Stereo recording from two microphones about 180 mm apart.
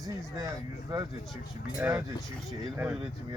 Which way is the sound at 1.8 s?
10° right (ahead or behind).